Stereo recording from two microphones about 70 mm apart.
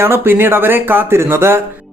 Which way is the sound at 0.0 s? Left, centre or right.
Right.